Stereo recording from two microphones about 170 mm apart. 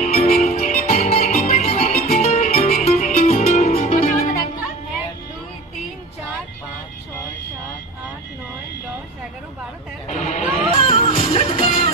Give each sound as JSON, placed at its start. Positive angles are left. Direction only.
{"t": 0.0, "sound": "music", "side_deg": 40}
{"t": 10.0, "sound": "music", "side_deg": 40}